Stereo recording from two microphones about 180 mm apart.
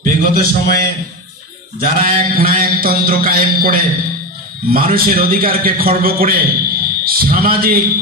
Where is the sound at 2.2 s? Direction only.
50° right (ahead or behind).